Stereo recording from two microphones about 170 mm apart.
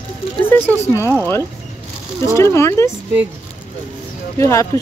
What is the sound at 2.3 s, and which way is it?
Speech, 15° left (ahead or behind).